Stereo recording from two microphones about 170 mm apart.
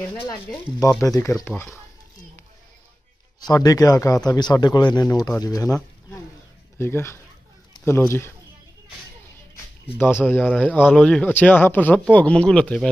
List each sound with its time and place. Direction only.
0.7 s speech: 20° left (ahead or behind)
3.3 s speech: 20° left (ahead or behind)
6.8 s a man's voice: 15° left (ahead or behind)
9.9 s a man's voice: 15° left (ahead or behind)